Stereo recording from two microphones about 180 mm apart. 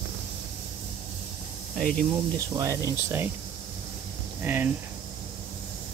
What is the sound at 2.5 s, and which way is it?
Speech, 20° right (ahead or behind).